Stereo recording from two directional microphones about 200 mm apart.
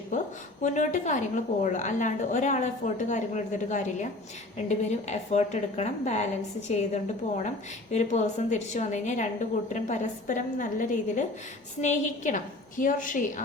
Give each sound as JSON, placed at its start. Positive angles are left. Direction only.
{"t": 0.1, "sound": "a woman's voice", "side_deg": 40}